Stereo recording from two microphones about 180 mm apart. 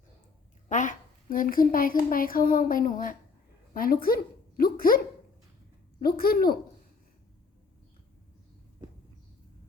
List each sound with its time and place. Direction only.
0.7 s a woman's voice: 45° left (ahead or behind)
6.0 s a woman's voice: 55° left (ahead or behind)